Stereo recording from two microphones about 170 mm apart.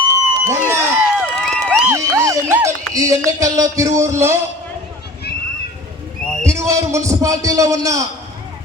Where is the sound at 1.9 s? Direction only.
15° right (ahead or behind).